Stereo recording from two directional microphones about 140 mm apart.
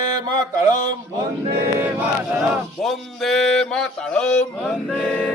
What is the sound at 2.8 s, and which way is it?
Mantra, centre (ahead or behind).